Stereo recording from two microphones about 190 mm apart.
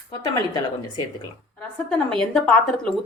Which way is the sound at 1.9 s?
5° left (ahead or behind).